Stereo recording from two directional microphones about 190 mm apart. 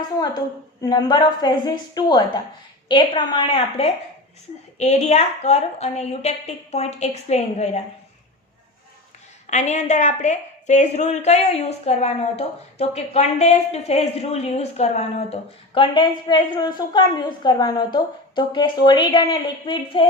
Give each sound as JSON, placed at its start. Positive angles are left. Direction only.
{"t": 0.2, "sound": "a woman's voice", "side_deg": 20}
{"t": 9.5, "sound": "a woman's voice", "side_deg": 35}